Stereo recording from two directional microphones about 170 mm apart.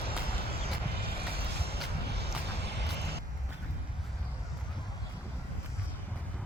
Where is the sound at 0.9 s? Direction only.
65° right (ahead or behind).